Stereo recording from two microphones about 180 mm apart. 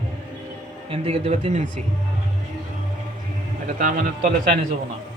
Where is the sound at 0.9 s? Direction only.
35° right (ahead or behind).